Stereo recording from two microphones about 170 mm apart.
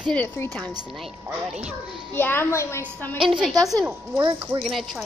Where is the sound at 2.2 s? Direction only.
15° left (ahead or behind).